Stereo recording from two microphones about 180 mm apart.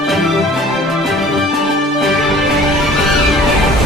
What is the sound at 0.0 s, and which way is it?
Music, centre (ahead or behind).